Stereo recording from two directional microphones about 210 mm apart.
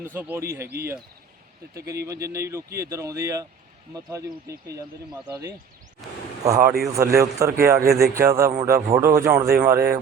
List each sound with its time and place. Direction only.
0.0 s speech: 10° right (ahead or behind)
2.0 s speech: 15° right (ahead or behind)
6.0 s speech: centre (ahead or behind)
6.4 s speech: 15° right (ahead or behind)